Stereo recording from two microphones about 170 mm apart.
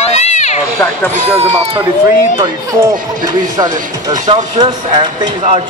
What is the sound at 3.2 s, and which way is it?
Speech, 20° right (ahead or behind).